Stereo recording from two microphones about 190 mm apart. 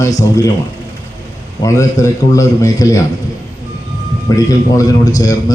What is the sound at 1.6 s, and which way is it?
A man's voice, 15° left (ahead or behind).